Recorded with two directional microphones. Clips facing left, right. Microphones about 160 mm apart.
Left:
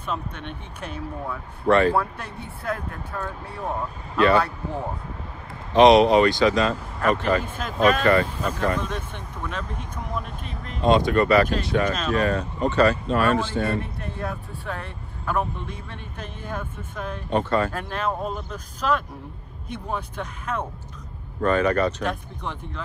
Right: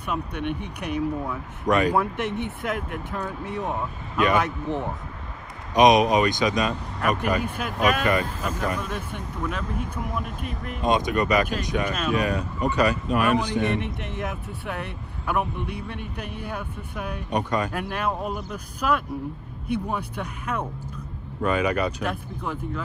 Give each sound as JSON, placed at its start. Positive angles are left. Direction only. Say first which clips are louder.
{"t": 0.0, "sound": "speech", "louder": "right 3 dB", "side_deg": -15}
{"t": 5.8, "sound": "speech", "louder": "left 3 dB", "side_deg": -15}
{"t": 10.9, "sound": "speech", "louder": "left 4 dB", "side_deg": -20}